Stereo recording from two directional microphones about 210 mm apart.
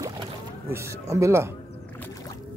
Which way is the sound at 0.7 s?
15° right (ahead or behind).